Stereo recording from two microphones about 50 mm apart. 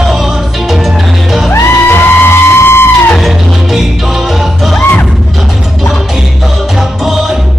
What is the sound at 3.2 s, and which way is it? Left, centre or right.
Music, centre.